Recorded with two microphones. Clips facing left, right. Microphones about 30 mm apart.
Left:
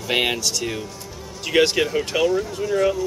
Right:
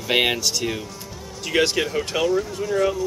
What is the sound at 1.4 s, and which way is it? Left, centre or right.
Speech, centre.